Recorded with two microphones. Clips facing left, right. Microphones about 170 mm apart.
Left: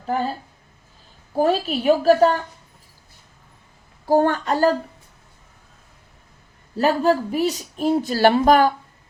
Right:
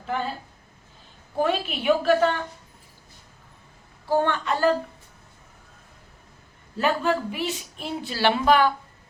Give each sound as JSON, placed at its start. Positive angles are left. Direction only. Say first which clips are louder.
{"t": 0.0, "sound": "speech", "louder": "left 5 dB", "side_deg": 40}
{"t": 1.3, "sound": "speech", "louder": "left 5 dB", "side_deg": 40}
{"t": 4.0, "sound": "speech", "louder": "left 5 dB", "side_deg": 40}
{"t": 6.7, "sound": "speech", "louder": "left 5 dB", "side_deg": 40}